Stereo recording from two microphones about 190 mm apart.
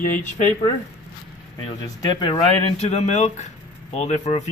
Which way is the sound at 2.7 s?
35° left (ahead or behind).